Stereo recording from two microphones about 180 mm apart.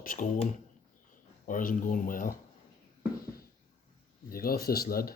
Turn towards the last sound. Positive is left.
turn(degrees=55)  # may be behind; listen again after turning